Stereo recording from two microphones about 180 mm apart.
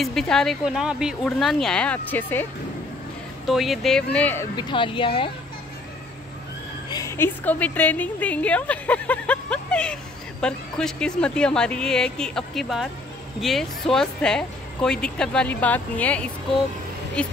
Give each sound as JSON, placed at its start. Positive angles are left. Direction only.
{"t": 0.0, "sound": "speech", "side_deg": 5}
{"t": 3.4, "sound": "speech", "side_deg": 0}
{"t": 4.6, "sound": "speech", "side_deg": 25}
{"t": 6.9, "sound": "a woman's voice", "side_deg": 15}